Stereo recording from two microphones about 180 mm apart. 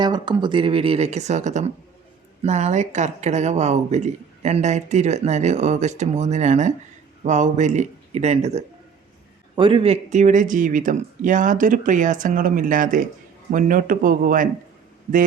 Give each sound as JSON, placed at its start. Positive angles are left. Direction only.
{"t": 0.0, "sound": "speech", "side_deg": -25}